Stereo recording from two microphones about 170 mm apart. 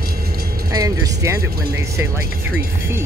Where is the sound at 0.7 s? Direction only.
20° right (ahead or behind).